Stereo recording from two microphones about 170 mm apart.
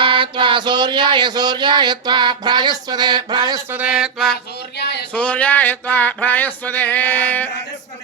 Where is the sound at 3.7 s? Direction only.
5° right (ahead or behind).